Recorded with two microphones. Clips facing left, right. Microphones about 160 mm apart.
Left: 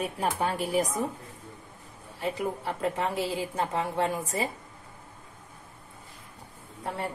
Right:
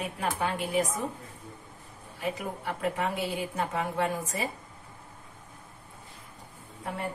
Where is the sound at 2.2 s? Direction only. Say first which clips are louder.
Left 3 dB; 30° left (ahead or behind).